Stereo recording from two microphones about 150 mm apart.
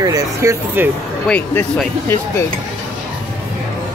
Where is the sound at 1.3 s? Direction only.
15° left (ahead or behind).